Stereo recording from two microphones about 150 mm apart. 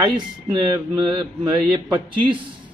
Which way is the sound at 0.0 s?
30° right (ahead or behind).